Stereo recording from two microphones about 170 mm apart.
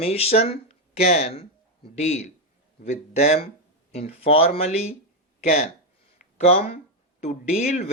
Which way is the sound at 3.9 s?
35° left (ahead or behind).